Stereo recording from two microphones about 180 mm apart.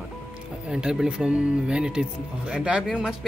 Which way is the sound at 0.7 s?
5° right (ahead or behind).